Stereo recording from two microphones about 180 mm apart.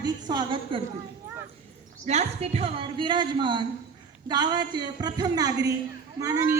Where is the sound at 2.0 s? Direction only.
35° right (ahead or behind).